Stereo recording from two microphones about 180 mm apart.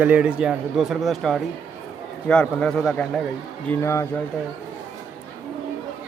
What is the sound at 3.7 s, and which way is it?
Speech, 15° left (ahead or behind).